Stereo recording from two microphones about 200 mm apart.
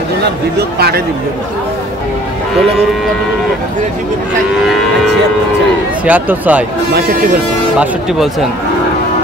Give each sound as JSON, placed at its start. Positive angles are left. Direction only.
{"t": 0.6, "sound": "speech", "side_deg": -50}
{"t": 6.0, "sound": "speech", "side_deg": -10}
{"t": 6.9, "sound": "speech", "side_deg": -50}
{"t": 7.8, "sound": "speech", "side_deg": 0}